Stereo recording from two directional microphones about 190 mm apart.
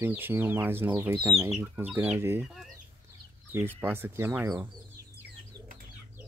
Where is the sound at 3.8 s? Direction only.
10° right (ahead or behind).